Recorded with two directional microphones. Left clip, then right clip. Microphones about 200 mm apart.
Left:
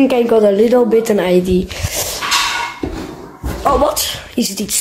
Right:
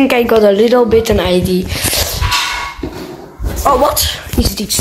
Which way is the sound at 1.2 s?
15° left (ahead or behind).